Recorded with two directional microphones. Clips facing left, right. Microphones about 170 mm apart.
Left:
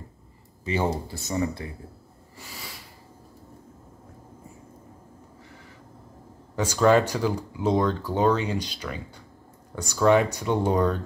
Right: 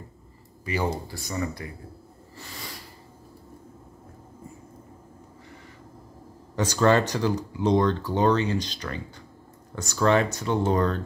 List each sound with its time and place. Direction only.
0.7 s speech: 25° left (ahead or behind)
2.3 s a sound: 5° left (ahead or behind)
6.5 s speech: 10° left (ahead or behind)